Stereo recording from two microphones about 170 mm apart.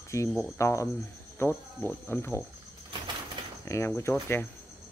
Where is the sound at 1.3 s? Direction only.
15° left (ahead or behind).